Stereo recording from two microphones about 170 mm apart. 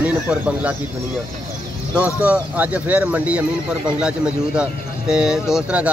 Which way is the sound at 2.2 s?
10° right (ahead or behind).